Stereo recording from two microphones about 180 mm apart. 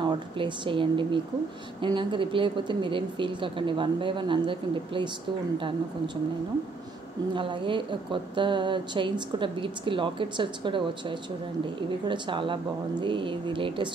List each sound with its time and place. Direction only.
0.0 s speech: 30° right (ahead or behind)
7.3 s speech: 30° right (ahead or behind)